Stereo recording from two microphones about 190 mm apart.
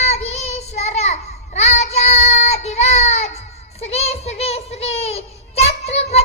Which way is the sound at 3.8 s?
35° left (ahead or behind).